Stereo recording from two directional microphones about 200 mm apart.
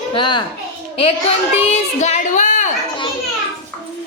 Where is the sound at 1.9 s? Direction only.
35° left (ahead or behind).